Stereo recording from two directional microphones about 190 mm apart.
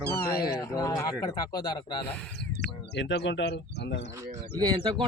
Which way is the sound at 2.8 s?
65° left (ahead or behind).